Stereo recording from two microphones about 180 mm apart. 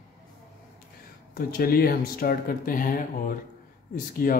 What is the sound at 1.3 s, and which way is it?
Speech, 55° left (ahead or behind).